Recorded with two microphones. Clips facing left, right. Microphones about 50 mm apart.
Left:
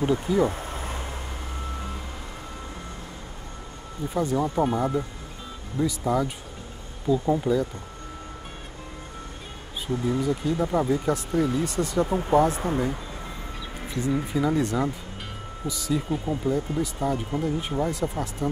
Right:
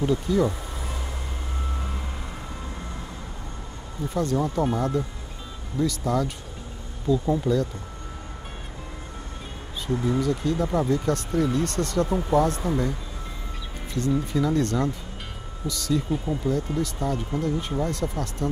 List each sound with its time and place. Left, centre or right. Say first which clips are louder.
0.0 s speech: even; centre
0.5 s vehicle: left 1 dB; left
4.1 s speech: even; centre
10.2 s speech: even; centre
14.2 s speech: even; centre